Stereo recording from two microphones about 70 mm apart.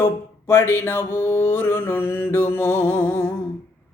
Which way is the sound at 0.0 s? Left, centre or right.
Left.